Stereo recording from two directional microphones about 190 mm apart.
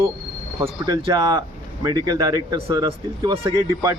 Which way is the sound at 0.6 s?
25° right (ahead or behind).